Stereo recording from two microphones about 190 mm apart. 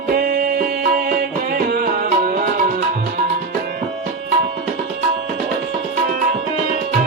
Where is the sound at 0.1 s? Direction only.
50° right (ahead or behind).